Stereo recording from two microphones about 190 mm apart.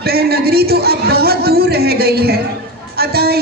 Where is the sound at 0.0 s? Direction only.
55° right (ahead or behind).